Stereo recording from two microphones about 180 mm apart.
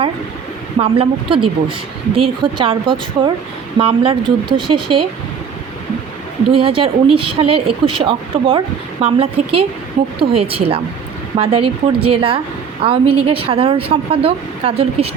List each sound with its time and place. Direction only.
0.8 s speech: 30° right (ahead or behind)
6.6 s speech: 30° right (ahead or behind)